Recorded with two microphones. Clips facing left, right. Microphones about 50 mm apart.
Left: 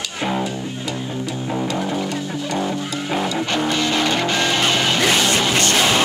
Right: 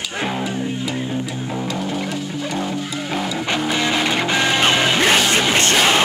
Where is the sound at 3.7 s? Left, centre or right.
Centre.